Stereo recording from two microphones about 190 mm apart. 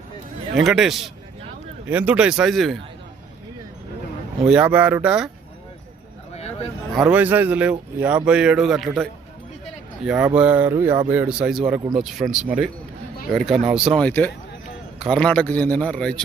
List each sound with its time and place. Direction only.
0.5 s speech: centre (ahead or behind)
4.4 s speech: 5° right (ahead or behind)
6.3 s a sound: 35° left (ahead or behind)
6.9 s speech: 5° right (ahead or behind)